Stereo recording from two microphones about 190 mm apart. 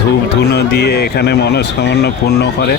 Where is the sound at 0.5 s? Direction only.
60° left (ahead or behind).